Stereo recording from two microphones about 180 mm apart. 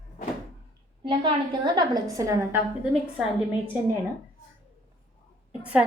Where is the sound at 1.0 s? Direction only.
25° right (ahead or behind).